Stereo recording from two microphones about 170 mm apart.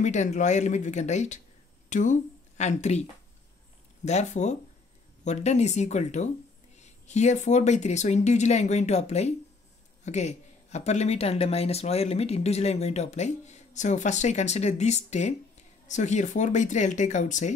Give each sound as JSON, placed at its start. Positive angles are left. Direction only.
{"t": 0.0, "sound": "speech", "side_deg": 45}